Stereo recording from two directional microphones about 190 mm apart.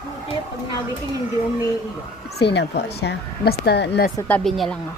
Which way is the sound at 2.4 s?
60° left (ahead or behind).